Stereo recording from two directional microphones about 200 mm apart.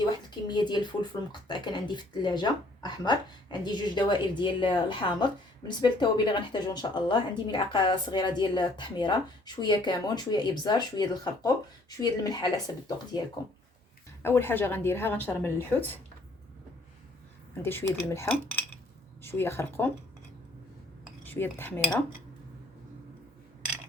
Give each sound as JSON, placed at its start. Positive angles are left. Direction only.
{"t": 0.0, "sound": "a sound", "side_deg": 20}
{"t": 1.3, "sound": "speech", "side_deg": 20}
{"t": 14.2, "sound": "a woman's voice", "side_deg": 10}
{"t": 17.6, "sound": "a woman's voice", "side_deg": 10}
{"t": 21.2, "sound": "a woman's voice", "side_deg": 10}